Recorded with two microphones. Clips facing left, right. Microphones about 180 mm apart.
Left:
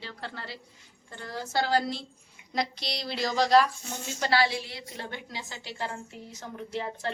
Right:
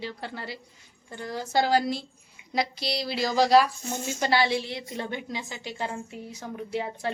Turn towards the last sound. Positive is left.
turn(degrees=-10)  # may be behind; listen again after turning